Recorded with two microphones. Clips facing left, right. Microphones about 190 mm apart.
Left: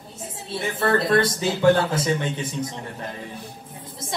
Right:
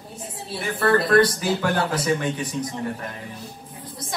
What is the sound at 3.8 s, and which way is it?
Music, 25° left (ahead or behind).